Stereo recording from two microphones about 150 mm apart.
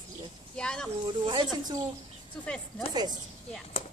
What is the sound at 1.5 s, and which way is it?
Speech, 25° right (ahead or behind).